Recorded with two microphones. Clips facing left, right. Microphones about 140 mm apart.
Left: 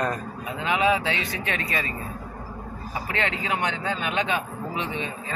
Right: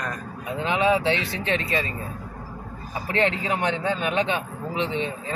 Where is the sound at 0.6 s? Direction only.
30° right (ahead or behind).